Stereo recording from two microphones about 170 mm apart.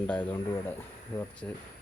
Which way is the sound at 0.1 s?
10° left (ahead or behind).